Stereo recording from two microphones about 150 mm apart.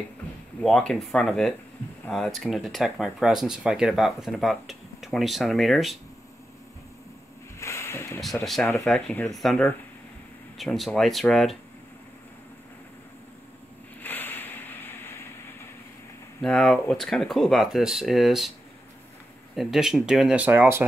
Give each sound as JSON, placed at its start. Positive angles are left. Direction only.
{"t": 0.6, "sound": "speech", "side_deg": 5}
{"t": 7.5, "sound": "a sound", "side_deg": 20}
{"t": 8.7, "sound": "speech", "side_deg": 5}
{"t": 14.0, "sound": "vehicle", "side_deg": 15}
{"t": 16.3, "sound": "speech", "side_deg": 5}
{"t": 19.5, "sound": "speech", "side_deg": 0}